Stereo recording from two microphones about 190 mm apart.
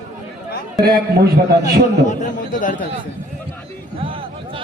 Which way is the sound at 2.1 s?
40° left (ahead or behind).